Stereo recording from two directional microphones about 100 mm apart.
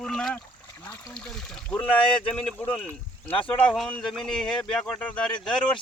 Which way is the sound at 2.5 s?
15° left (ahead or behind).